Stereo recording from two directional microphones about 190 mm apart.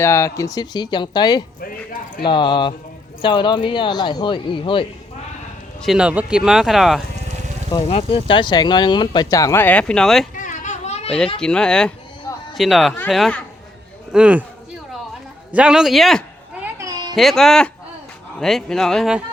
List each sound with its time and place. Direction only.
0.0 s speech: 15° left (ahead or behind)
1.6 s speech: 50° left (ahead or behind)
2.2 s speech: 25° left (ahead or behind)
5.8 s speech: 5° right (ahead or behind)
7.7 s speech: 30° left (ahead or behind); by 10.2 s centre (ahead or behind)
10.4 s children playing: 40° left (ahead or behind)
11.3 s speech: 5° left (ahead or behind)
15.5 s speech: 5° right (ahead or behind)
16.7 s a sound: 15° right (ahead or behind)
17.2 s speech: centre (ahead or behind)